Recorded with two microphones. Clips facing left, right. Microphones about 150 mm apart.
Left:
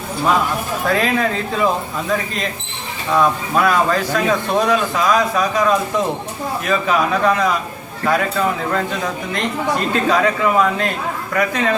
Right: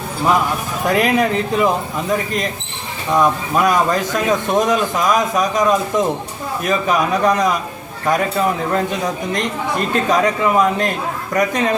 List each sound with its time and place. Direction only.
0.9 s a man's voice: 15° right (ahead or behind)